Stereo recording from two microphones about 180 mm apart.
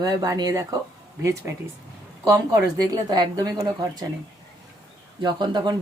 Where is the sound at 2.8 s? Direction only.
20° right (ahead or behind).